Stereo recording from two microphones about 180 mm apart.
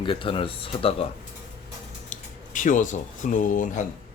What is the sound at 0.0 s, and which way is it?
Speech, 30° left (ahead or behind).